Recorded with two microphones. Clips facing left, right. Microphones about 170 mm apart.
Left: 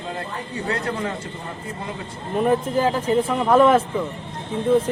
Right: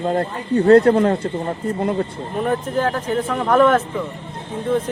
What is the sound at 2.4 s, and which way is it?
Speech, 5° left (ahead or behind).